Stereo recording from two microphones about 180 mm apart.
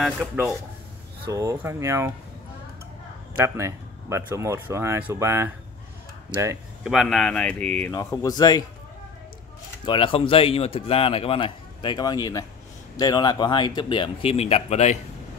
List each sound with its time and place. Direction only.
0.0 s speech: centre (ahead or behind)
1.3 s speech: 15° right (ahead or behind)
3.3 s speech: 15° right (ahead or behind)
6.8 s speech: centre (ahead or behind); by 8.6 s 20° left (ahead or behind)
9.8 s speech: 30° left (ahead or behind)